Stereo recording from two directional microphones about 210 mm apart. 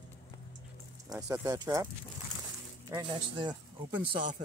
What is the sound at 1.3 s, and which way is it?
Speech, 15° right (ahead or behind).